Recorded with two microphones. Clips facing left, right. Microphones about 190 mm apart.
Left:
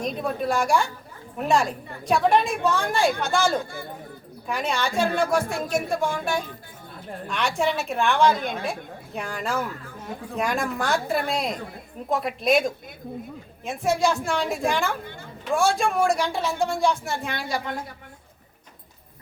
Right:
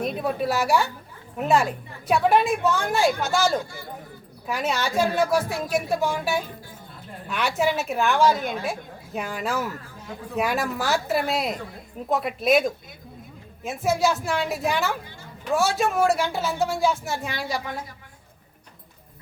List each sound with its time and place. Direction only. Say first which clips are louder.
0.0 s a woman's voice: right 1 dB; 5° right (ahead or behind)